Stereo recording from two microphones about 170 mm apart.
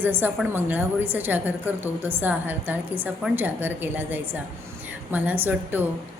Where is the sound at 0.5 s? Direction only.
10° right (ahead or behind).